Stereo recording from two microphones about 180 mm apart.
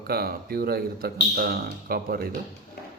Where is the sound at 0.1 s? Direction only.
60° right (ahead or behind).